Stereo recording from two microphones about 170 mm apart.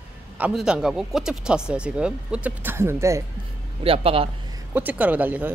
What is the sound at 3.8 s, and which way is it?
Speech, 35° right (ahead or behind).